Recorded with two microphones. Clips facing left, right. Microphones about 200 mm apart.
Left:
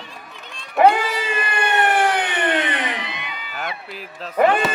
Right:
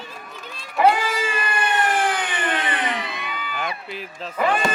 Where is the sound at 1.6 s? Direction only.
65° left (ahead or behind).